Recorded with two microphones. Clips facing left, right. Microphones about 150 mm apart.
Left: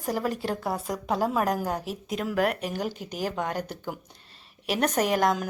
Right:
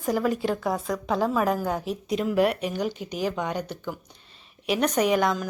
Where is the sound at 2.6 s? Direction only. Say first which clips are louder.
Right 3 dB; 40° left (ahead or behind).